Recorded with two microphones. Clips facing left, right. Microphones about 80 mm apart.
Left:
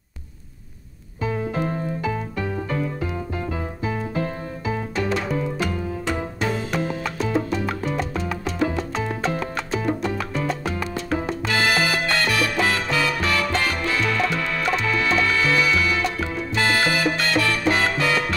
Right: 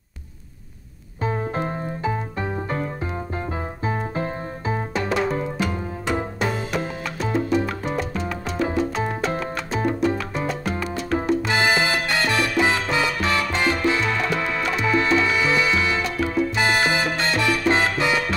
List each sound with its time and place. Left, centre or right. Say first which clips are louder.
1.2 s music: even; right
8.6 s salsa music: right 3 dB; right
11.4 s salsa music: right 1 dB; centre
14.3 s music: even; centre
16.5 s salsa music: left 3 dB; centre